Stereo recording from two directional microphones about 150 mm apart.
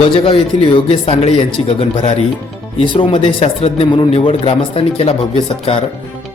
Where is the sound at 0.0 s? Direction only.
35° left (ahead or behind).